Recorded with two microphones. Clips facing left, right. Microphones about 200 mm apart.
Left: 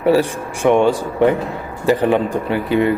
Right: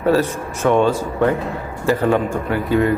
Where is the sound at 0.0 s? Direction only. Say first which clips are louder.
Left 2 dB; 15° left (ahead or behind).